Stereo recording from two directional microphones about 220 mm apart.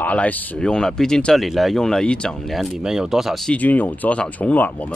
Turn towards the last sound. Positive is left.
turn(degrees=5)  # may be behind; listen again after turning